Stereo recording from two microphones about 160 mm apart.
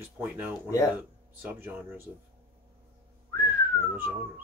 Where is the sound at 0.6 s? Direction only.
20° left (ahead or behind).